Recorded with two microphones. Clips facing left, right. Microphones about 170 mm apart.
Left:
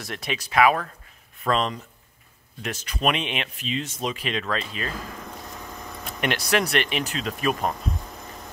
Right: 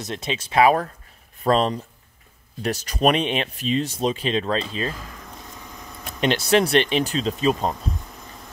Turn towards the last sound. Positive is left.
turn(degrees=-25)  # may be behind; listen again after turning